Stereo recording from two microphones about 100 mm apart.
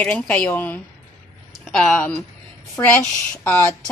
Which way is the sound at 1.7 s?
5° left (ahead or behind).